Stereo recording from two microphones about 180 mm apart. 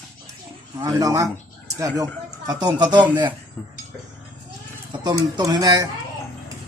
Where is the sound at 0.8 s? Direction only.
20° right (ahead or behind).